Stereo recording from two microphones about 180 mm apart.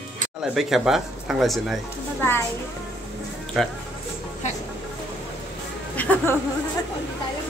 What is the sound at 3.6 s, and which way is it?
Speech, centre (ahead or behind).